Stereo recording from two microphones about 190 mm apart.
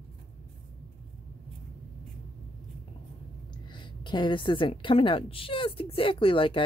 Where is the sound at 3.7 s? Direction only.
25° left (ahead or behind).